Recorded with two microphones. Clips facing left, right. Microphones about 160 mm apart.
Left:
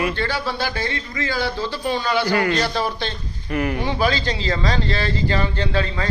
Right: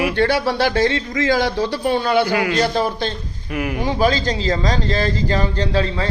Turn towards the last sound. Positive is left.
turn(degrees=-30)  # may be behind; listen again after turning